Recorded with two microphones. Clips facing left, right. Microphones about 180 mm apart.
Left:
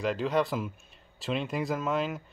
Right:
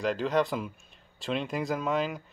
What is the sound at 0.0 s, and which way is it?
Speech, centre (ahead or behind).